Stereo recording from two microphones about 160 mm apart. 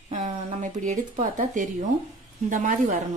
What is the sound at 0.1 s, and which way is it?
A woman's voice, 45° right (ahead or behind).